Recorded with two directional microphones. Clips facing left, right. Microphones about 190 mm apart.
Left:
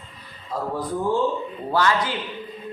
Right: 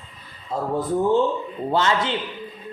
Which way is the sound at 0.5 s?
25° right (ahead or behind).